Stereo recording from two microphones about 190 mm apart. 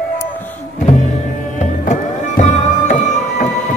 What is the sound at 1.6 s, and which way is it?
Music, 40° left (ahead or behind).